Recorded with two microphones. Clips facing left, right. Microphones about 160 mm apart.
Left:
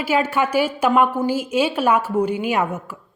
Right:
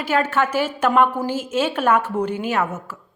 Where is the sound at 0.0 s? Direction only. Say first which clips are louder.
Left 1 dB; 10° left (ahead or behind).